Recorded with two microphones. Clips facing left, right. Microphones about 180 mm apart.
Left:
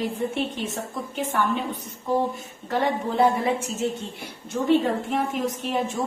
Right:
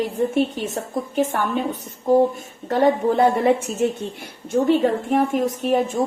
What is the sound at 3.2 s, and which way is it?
Speech, 60° right (ahead or behind).